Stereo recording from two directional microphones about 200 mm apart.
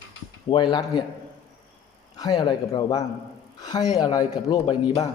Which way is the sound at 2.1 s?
20° left (ahead or behind).